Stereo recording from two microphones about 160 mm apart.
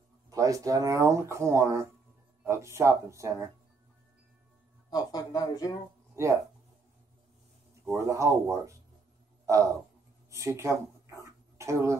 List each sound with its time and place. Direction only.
0.3 s speech: 20° right (ahead or behind)
4.9 s speech: 25° left (ahead or behind)
6.1 s speech: 20° right (ahead or behind)
7.9 s speech: 20° right (ahead or behind)
10.3 s a sound: 20° right (ahead or behind)